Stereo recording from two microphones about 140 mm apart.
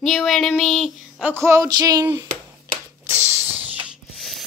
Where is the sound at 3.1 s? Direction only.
15° right (ahead or behind).